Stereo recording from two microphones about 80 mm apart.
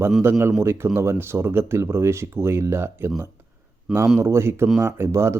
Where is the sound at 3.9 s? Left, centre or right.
Centre.